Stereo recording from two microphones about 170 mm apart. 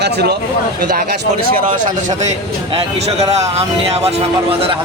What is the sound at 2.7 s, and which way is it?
Speech, 40° right (ahead or behind).